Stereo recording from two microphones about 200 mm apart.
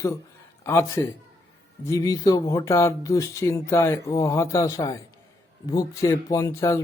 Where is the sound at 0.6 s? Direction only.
15° left (ahead or behind).